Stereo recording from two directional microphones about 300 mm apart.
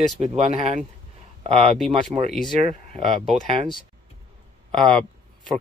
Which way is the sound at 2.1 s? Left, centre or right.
Centre.